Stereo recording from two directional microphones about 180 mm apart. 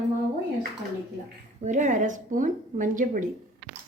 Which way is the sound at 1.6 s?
45° right (ahead or behind).